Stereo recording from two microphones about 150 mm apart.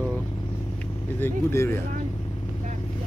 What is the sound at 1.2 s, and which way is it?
Speech, 15° left (ahead or behind).